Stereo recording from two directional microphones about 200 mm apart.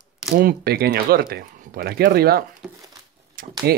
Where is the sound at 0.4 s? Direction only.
50° right (ahead or behind).